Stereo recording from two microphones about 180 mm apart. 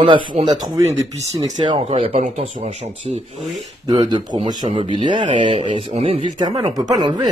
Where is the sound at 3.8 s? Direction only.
20° right (ahead or behind).